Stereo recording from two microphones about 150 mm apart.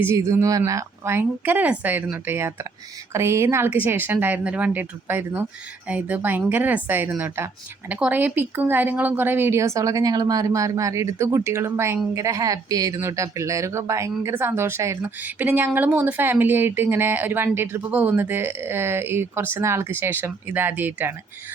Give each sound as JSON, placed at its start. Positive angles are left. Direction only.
{"t": 0.0, "sound": "speech", "side_deg": -20}